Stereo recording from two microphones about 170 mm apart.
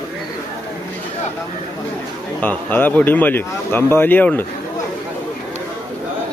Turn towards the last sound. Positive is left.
turn(degrees=10)  # may be behind; listen again after turning